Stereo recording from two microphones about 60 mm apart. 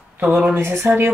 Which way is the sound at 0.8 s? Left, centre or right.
Right.